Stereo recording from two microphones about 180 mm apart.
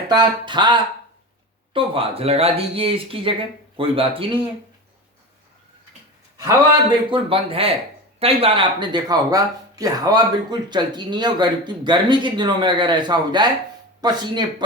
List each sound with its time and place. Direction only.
0.1 s speech: 25° right (ahead or behind)
7.1 s speech: 30° right (ahead or behind)